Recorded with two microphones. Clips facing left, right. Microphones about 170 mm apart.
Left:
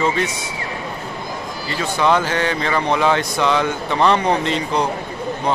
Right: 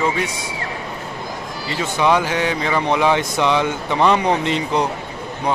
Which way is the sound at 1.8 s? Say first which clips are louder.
Even; 15° right (ahead or behind).